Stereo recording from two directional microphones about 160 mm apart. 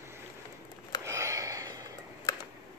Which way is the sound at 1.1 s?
20° right (ahead or behind).